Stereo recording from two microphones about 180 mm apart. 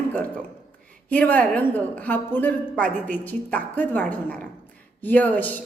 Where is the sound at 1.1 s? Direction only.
10° left (ahead or behind).